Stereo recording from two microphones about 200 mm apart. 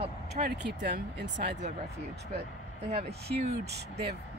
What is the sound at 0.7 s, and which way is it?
Speech, 60° right (ahead or behind).